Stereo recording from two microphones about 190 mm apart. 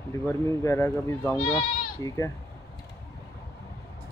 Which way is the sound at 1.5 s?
25° left (ahead or behind).